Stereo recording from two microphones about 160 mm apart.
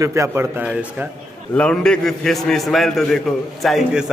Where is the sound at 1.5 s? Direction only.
5° left (ahead or behind).